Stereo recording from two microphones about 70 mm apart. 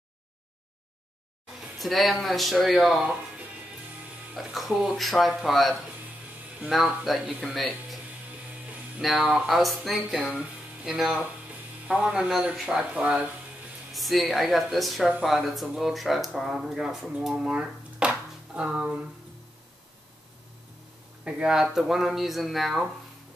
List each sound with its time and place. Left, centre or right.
1.6 s speech: centre
3.0 s speech: centre
4.4 s speech: centre
7.2 s speech: centre
9.2 s speech: centre
10.3 s music: centre
10.9 s speech: centre
13.9 s speech: centre
17.2 s a sound: centre
21.2 s speech: centre